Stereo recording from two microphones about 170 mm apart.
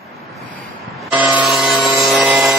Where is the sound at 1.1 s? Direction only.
10° right (ahead or behind).